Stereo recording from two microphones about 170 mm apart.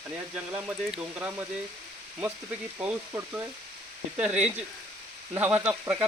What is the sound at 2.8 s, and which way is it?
Speech, 10° right (ahead or behind).